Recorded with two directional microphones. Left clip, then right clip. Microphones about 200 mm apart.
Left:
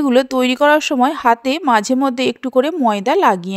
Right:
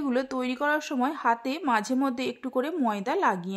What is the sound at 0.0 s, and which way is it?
A woman's voice, 40° left (ahead or behind).